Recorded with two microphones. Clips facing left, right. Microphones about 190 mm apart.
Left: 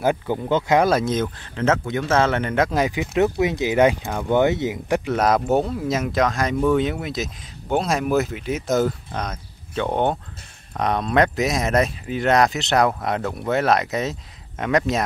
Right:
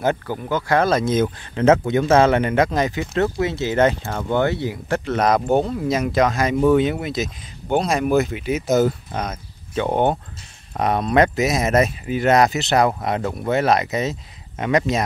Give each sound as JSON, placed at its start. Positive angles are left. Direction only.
{"t": 0.3, "sound": "speech", "side_deg": 25}
{"t": 0.8, "sound": "speech", "side_deg": 5}
{"t": 1.1, "sound": "speech", "side_deg": -10}
{"t": 2.5, "sound": "speech", "side_deg": 5}